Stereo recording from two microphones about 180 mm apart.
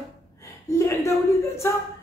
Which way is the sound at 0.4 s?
15° left (ahead or behind).